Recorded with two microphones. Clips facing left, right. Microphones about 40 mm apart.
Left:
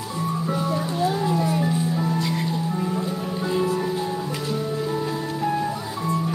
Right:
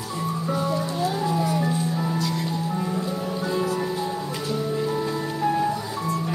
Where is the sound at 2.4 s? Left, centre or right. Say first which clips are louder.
Left 1 dB; centre.